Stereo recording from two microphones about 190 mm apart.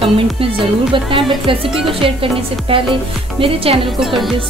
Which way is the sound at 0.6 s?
25° right (ahead or behind).